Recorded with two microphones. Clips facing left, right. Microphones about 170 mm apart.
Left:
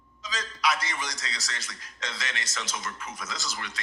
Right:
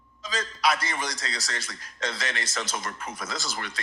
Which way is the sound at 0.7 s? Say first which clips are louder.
Right 2 dB; 55° right (ahead or behind).